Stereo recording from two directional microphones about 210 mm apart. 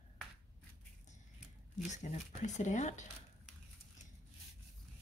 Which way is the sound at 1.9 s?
35° left (ahead or behind).